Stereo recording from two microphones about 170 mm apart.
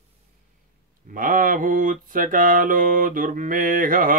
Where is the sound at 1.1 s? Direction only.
55° right (ahead or behind).